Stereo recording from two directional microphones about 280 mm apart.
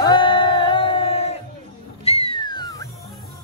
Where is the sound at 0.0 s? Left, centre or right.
Centre.